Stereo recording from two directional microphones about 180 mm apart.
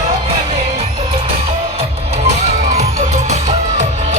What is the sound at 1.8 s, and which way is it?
Music, 35° right (ahead or behind).